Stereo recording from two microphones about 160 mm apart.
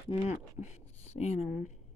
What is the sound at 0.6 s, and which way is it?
Speech, 40° left (ahead or behind).